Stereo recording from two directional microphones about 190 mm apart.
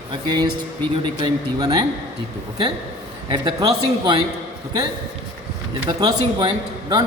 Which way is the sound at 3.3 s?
20° right (ahead or behind).